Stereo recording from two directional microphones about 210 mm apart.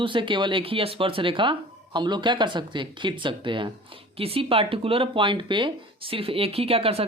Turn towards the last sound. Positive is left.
turn(degrees=-25)  # may be behind; listen again after turning